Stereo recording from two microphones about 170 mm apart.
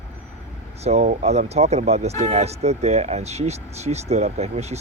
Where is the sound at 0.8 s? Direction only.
40° right (ahead or behind).